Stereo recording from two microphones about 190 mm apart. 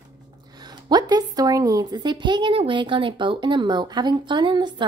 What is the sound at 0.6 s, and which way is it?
Speech, 20° right (ahead or behind).